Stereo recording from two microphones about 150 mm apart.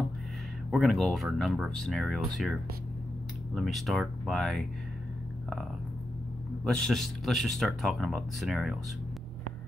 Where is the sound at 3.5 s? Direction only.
Centre (ahead or behind).